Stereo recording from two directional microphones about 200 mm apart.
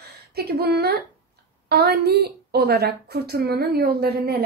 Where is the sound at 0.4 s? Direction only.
55° right (ahead or behind).